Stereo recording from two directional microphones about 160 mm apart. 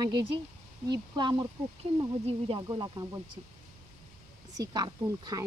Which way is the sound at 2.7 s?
25° right (ahead or behind).